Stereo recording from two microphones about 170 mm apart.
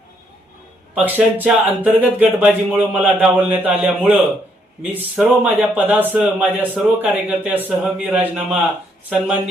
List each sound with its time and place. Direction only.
0.9 s speech: 10° right (ahead or behind)